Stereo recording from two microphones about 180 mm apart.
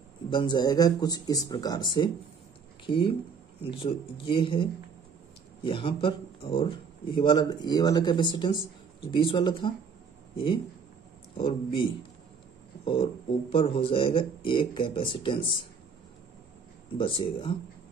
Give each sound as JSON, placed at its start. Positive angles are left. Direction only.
{"t": 0.3, "sound": "speech", "side_deg": 25}
{"t": 17.0, "sound": "speech", "side_deg": 30}